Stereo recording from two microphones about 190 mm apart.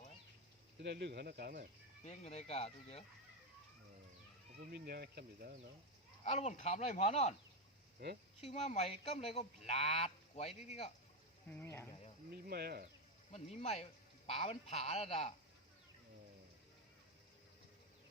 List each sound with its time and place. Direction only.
0.8 s speech: 65° right (ahead or behind)
2.0 s cattle: 35° left (ahead or behind)
4.7 s speech: 55° right (ahead or behind)
6.2 s cattle: 40° left (ahead or behind)
7.9 s speech: 55° right (ahead or behind)
8.4 s cattle: 35° left (ahead or behind)
11.5 s speech: 15° left (ahead or behind)
12.5 s speech: 55° right (ahead or behind)
13.3 s cattle: 35° left (ahead or behind)